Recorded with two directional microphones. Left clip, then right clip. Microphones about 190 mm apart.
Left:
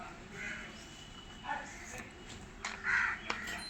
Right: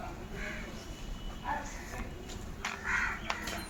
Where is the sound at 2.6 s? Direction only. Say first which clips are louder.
Even; 25° left (ahead or behind).